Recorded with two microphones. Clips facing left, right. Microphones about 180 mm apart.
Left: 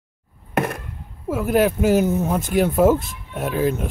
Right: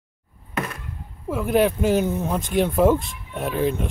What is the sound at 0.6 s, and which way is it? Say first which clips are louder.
Chop: left 6 dB; 60° left (ahead or behind).